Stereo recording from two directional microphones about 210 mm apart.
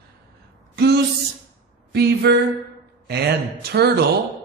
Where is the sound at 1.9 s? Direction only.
50° right (ahead or behind).